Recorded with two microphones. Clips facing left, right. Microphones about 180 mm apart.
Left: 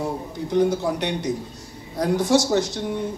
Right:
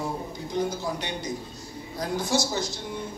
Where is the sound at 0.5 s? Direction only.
70° left (ahead or behind).